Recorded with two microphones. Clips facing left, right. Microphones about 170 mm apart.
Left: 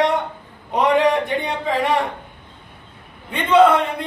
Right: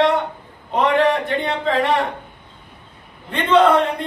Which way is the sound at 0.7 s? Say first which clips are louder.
Even; 15° left (ahead or behind).